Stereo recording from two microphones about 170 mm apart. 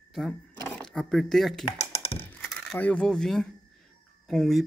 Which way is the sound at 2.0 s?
35° left (ahead or behind).